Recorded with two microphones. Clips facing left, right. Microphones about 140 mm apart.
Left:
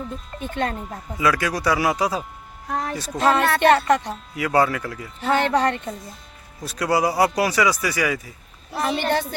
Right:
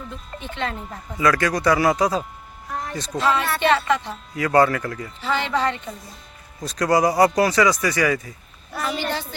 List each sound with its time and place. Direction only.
0.5 s speech: 45° left (ahead or behind)
1.2 s speech: 10° left (ahead or behind)
2.6 s a sound: 65° left (ahead or behind)
3.2 s speech: 50° left (ahead or behind)
4.1 s speech: 10° left (ahead or behind)
5.2 s speech: 50° left (ahead or behind)
6.6 s speech: 5° left (ahead or behind)
8.7 s a sound: 30° left (ahead or behind)
9.0 s a woman's voice: 55° left (ahead or behind)